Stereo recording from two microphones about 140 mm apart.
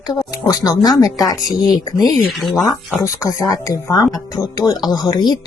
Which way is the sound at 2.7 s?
25° left (ahead or behind).